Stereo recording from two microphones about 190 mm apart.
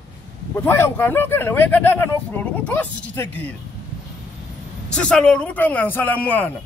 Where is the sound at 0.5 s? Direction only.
10° left (ahead or behind).